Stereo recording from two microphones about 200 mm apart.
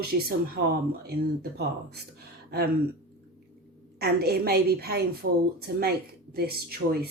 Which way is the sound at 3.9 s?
50° right (ahead or behind).